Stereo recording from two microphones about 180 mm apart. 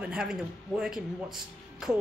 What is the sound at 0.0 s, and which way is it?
Speech, 5° right (ahead or behind).